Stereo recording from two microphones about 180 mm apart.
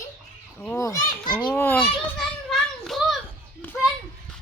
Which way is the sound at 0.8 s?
20° left (ahead or behind).